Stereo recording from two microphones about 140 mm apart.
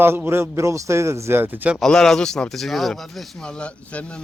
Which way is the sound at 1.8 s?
5° left (ahead or behind).